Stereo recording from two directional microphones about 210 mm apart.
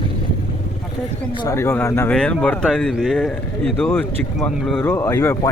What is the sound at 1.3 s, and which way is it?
Speech, 20° left (ahead or behind).